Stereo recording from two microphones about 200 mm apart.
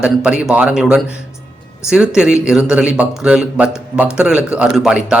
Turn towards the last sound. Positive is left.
turn(degrees=-5)  # may be behind; listen again after turning